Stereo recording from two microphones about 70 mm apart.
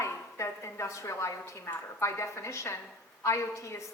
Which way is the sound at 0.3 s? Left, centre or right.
Left.